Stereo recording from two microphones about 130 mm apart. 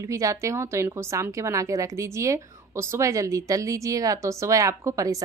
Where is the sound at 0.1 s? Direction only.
25° right (ahead or behind).